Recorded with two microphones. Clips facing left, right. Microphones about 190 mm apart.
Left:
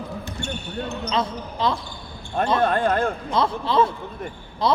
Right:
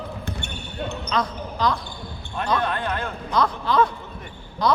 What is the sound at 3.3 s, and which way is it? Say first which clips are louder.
A man's voice: right 3 dB; 25° left (ahead or behind).